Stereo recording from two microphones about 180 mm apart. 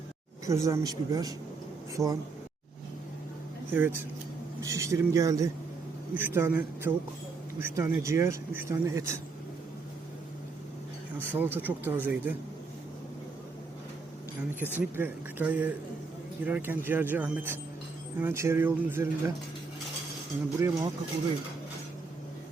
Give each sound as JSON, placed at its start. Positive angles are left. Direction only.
{"t": 0.4, "sound": "speech", "side_deg": -15}
{"t": 3.7, "sound": "speech", "side_deg": -10}
{"t": 11.3, "sound": "speech", "side_deg": -10}
{"t": 14.6, "sound": "speech", "side_deg": -10}
{"t": 20.6, "sound": "speech", "side_deg": -15}